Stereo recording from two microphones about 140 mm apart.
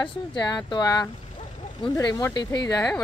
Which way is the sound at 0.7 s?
30° left (ahead or behind).